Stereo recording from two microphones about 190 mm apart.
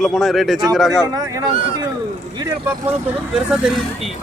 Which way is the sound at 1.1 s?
20° right (ahead or behind).